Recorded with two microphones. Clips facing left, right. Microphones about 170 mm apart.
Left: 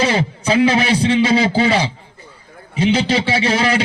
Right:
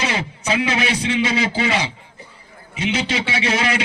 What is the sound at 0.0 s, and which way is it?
A man's voice, 30° left (ahead or behind).